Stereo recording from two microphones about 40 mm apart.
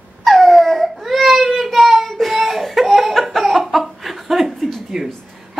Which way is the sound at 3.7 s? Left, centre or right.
Centre.